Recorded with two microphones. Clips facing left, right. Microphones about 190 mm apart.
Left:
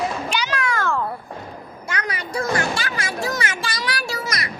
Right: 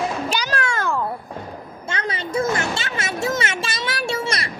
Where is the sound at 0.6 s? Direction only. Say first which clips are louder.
Even; 20° right (ahead or behind).